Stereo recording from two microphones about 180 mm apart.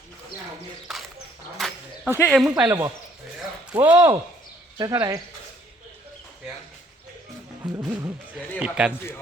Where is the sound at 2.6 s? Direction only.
15° right (ahead or behind).